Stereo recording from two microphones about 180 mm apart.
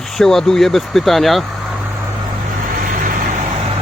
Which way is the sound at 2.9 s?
50° right (ahead or behind).